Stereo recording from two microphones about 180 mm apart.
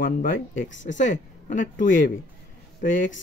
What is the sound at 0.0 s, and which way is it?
Speech, 50° left (ahead or behind).